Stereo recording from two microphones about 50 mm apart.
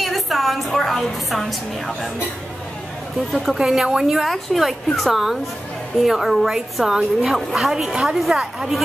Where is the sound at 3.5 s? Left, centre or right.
Centre.